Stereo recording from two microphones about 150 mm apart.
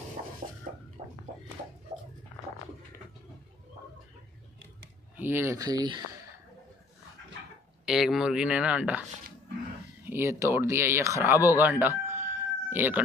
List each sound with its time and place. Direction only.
1.0 s a sound: 45° right (ahead or behind)
5.1 s speech: 15° right (ahead or behind)
7.8 s speech: centre (ahead or behind)
10.0 s speech: 15° right (ahead or behind)
12.1 s chicken: 15° right (ahead or behind)